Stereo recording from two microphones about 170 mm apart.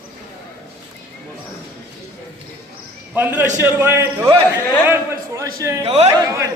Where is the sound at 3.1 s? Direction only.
10° right (ahead or behind).